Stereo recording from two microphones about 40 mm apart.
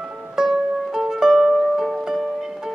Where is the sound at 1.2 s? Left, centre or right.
Centre.